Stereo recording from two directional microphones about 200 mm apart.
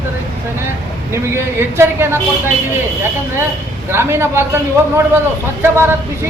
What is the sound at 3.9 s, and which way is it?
A man's voice, 10° right (ahead or behind).